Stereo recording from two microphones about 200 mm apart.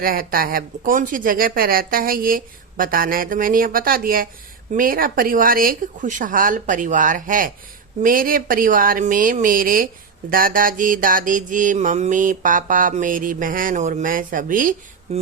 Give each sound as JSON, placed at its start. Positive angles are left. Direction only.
{"t": 0.0, "sound": "speech", "side_deg": -45}